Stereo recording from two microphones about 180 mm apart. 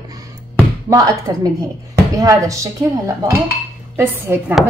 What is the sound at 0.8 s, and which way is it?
A woman's voice, 20° right (ahead or behind).